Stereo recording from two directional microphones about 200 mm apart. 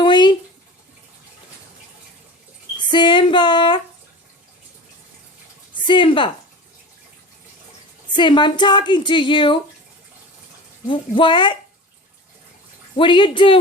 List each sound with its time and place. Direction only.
0.0 s a sound: 25° left (ahead or behind)
2.7 s female singing: 20° left (ahead or behind)
5.7 s speech: 25° left (ahead or behind)
8.1 s speech: 25° left (ahead or behind)
10.8 s speech: 25° left (ahead or behind)
13.0 s speech: 25° left (ahead or behind)